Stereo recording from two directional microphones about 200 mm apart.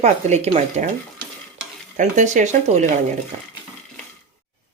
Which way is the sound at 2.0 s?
40° right (ahead or behind).